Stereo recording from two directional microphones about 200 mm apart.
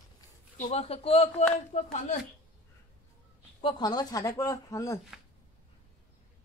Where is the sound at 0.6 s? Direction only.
35° left (ahead or behind).